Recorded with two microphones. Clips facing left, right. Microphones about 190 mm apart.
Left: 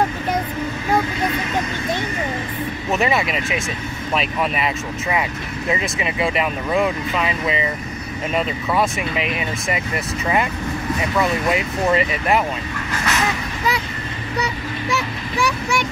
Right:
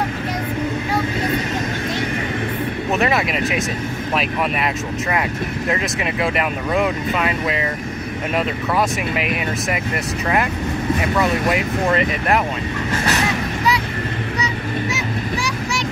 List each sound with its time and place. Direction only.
2.9 s speech: centre (ahead or behind)
8.7 s speech: 5° right (ahead or behind)
13.7 s vehicle: 50° left (ahead or behind)